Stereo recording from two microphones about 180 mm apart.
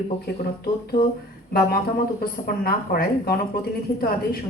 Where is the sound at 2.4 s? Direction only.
55° left (ahead or behind).